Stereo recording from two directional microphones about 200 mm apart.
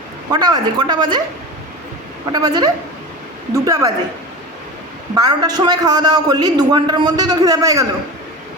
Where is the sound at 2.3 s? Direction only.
20° right (ahead or behind).